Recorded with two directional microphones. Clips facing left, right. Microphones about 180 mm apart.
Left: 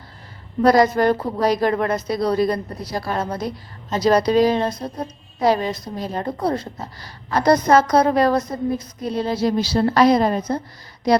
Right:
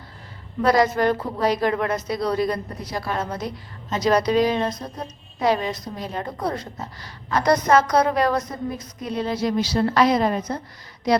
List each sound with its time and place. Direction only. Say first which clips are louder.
0.6 s a woman's voice: left 4 dB; 40° left (ahead or behind)